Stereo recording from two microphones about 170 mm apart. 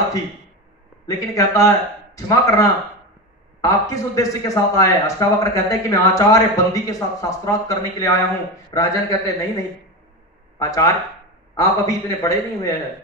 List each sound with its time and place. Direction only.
1.0 s a man's voice: 20° left (ahead or behind)